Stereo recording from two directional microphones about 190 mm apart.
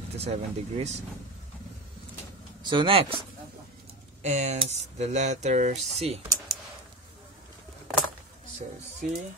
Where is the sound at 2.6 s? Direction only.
25° right (ahead or behind).